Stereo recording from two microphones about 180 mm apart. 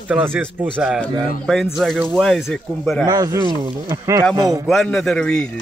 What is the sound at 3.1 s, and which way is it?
Speech, 20° right (ahead or behind).